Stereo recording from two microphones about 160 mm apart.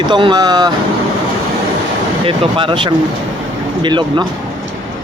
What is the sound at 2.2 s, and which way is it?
Speech, 35° right (ahead or behind).